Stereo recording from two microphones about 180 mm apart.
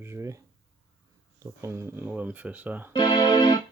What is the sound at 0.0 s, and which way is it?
Speech, 15° right (ahead or behind).